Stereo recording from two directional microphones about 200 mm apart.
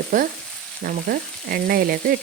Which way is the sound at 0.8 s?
50° right (ahead or behind).